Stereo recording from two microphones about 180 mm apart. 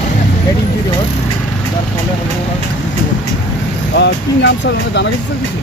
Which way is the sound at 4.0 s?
70° left (ahead or behind).